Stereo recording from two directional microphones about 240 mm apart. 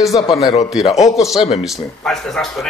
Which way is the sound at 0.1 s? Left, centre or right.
Left.